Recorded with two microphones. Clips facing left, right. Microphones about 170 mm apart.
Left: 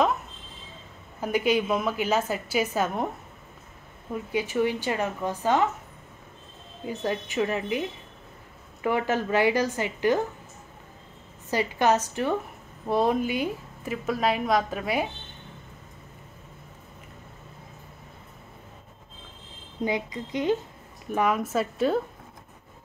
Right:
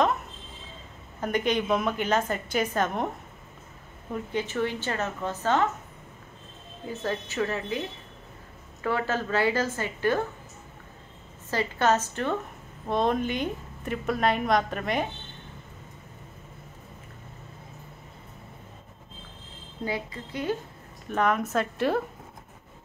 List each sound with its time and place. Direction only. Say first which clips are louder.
1.2 s a woman's voice: left 2 dB; 5° left (ahead or behind)
4.1 s a woman's voice: left 2 dB; 10° left (ahead or behind)
6.9 s a woman's voice: left 2 dB; 15° left (ahead or behind)
8.8 s a woman's voice: left 3 dB; 15° left (ahead or behind)
11.5 s a woman's voice: left 1 dB; 15° left (ahead or behind)
19.8 s a woman's voice: left 4 dB; 15° left (ahead or behind); by 22.0 s centre (ahead or behind)